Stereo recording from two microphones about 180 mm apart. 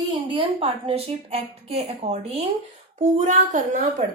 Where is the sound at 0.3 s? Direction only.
30° right (ahead or behind).